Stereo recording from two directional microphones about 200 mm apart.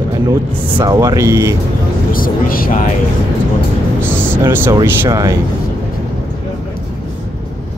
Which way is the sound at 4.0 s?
10° right (ahead or behind).